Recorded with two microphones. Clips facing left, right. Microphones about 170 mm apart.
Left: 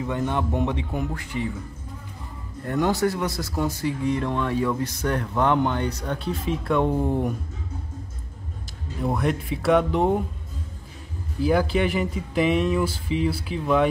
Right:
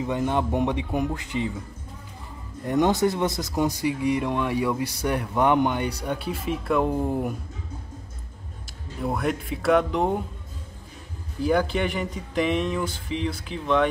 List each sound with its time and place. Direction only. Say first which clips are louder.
0.0 s speech: right 1 dB; 15° right (ahead or behind)
2.6 s speech: right 1 dB; 20° right (ahead or behind)
9.0 s speech: left 2 dB; centre (ahead or behind)
11.4 s speech: left 2 dB; centre (ahead or behind)